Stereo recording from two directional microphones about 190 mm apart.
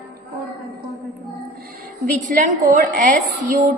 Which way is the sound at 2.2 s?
45° right (ahead or behind).